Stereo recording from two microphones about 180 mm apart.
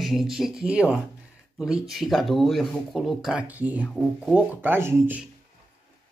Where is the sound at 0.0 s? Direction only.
Centre (ahead or behind).